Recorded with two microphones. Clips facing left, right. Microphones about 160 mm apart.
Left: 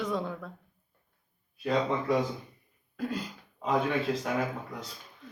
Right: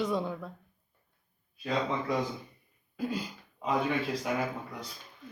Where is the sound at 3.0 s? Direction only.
5° right (ahead or behind).